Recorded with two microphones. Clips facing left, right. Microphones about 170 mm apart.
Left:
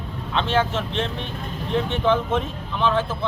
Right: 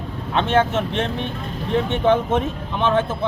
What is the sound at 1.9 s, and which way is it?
Speech, 20° right (ahead or behind).